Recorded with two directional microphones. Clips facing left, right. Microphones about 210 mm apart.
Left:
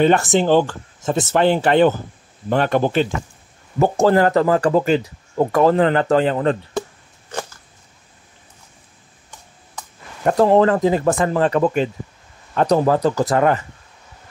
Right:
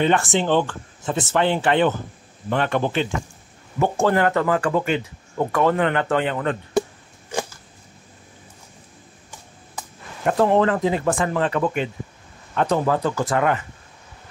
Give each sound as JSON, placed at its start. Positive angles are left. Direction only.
{"t": 0.0, "sound": "speech", "side_deg": 40}
{"t": 7.2, "sound": "a sound", "side_deg": -10}
{"t": 10.2, "sound": "speech", "side_deg": 35}